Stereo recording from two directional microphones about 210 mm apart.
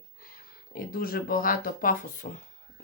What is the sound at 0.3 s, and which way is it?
Speech, 45° left (ahead or behind).